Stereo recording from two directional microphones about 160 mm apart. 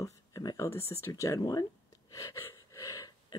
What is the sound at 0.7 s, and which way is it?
Speech, 15° left (ahead or behind).